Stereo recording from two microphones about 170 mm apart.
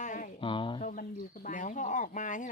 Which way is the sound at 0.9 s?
55° left (ahead or behind).